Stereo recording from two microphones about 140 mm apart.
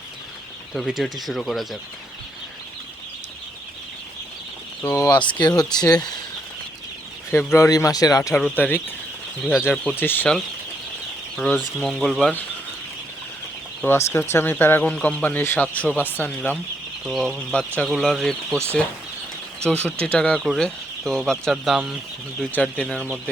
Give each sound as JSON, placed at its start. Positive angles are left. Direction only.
{"t": 0.7, "sound": "speech", "side_deg": 0}
{"t": 4.9, "sound": "speech", "side_deg": 25}
{"t": 7.3, "sound": "speech", "side_deg": 20}
{"t": 8.4, "sound": "speech", "side_deg": 10}
{"t": 11.3, "sound": "speech", "side_deg": 5}
{"t": 13.8, "sound": "speech", "side_deg": 15}
{"t": 17.1, "sound": "speech", "side_deg": 0}
{"t": 18.5, "sound": "speech", "side_deg": -15}
{"t": 19.8, "sound": "speech", "side_deg": 10}